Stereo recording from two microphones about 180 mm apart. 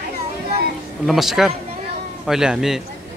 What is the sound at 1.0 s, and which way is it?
Speech, centre (ahead or behind).